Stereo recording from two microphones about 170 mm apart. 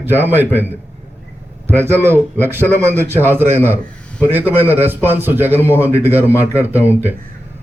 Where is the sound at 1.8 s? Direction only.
15° right (ahead or behind).